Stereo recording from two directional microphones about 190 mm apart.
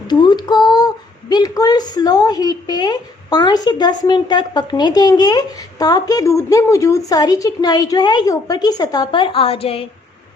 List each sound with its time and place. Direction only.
0.1 s a woman's voice: 20° left (ahead or behind)